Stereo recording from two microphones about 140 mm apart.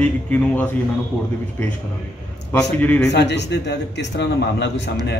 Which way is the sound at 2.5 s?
15° left (ahead or behind).